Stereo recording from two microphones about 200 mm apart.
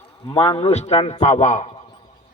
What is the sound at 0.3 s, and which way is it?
A man's voice, 25° left (ahead or behind).